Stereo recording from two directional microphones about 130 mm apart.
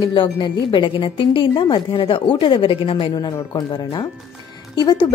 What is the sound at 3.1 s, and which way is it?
Speech, 30° left (ahead or behind).